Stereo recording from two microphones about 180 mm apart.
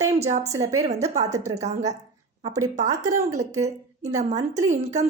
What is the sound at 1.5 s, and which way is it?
Speech, 40° right (ahead or behind).